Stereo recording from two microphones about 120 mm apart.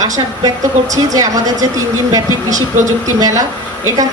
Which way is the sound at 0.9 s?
30° right (ahead or behind).